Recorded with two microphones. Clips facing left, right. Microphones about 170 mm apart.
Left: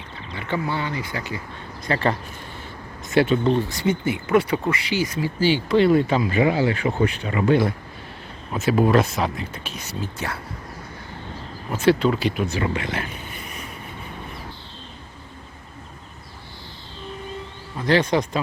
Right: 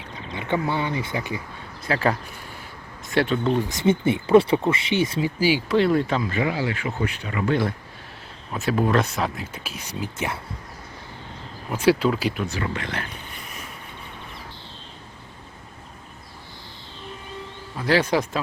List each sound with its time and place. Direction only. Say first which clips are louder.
0.3 s speech: right 2 dB; 20° right (ahead or behind)
1.9 s speech: even; 5° right (ahead or behind)
3.7 s speech: right 2 dB; 25° right (ahead or behind)
5.4 s speech: left 3 dB; 10° right (ahead or behind); by 6.4 s 10° left (ahead or behind)
6.4 s speech: left 5 dB; 25° left (ahead or behind)
8.7 s speech: left 3 dB; 5° left (ahead or behind); by 10.3 s 15° right (ahead or behind)
11.7 s speech: left 1 dB; 10° right (ahead or behind)
12.5 s speech: left 4 dB; 15° left (ahead or behind)
17.7 s speech: left 1 dB; 5° right (ahead or behind)